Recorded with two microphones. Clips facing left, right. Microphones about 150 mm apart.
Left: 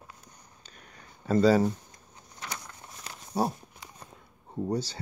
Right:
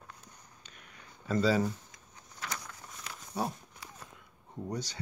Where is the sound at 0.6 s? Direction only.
35° left (ahead or behind).